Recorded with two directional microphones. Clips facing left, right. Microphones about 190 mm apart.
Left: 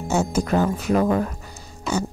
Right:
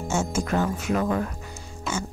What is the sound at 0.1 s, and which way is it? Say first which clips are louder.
Speech: left 5 dB; 35° left (ahead or behind).